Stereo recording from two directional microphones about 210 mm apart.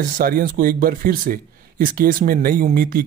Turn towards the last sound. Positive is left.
turn(degrees=-45)  # may be behind; listen again after turning